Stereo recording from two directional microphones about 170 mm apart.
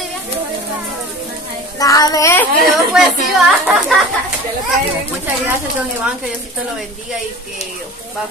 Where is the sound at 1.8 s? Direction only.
20° left (ahead or behind).